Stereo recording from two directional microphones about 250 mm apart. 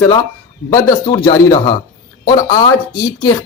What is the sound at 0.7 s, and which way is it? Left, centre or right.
Speech, centre.